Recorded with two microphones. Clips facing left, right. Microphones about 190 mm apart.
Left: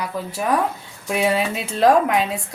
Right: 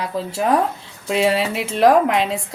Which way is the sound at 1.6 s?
90° right.